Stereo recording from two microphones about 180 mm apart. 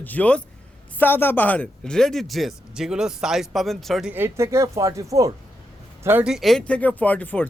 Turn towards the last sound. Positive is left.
turn(degrees=10)  # may be behind; listen again after turning